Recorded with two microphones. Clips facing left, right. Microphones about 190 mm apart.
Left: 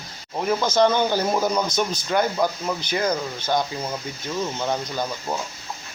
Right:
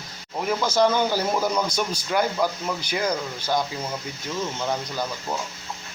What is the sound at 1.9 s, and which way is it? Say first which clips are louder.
Speech: left 1 dB; 5° right (ahead or behind).